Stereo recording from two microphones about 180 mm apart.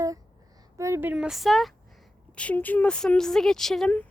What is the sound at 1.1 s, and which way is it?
A woman's voice, 5° right (ahead or behind).